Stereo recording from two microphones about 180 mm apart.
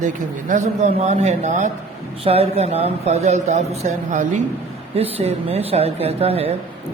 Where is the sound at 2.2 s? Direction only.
35° right (ahead or behind).